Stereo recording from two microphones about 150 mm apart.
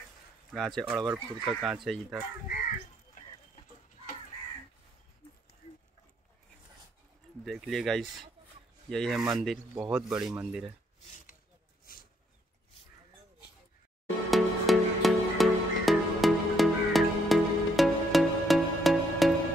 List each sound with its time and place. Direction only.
0.5 s speech: centre (ahead or behind)
7.4 s speech: centre (ahead or behind)
11.8 s a sound: 75° left (ahead or behind)
14.3 s music: centre (ahead or behind)